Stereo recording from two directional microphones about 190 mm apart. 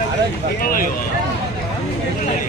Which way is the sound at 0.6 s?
50° left (ahead or behind).